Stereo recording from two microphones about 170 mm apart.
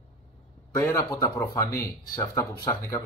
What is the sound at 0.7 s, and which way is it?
Speech, 15° left (ahead or behind).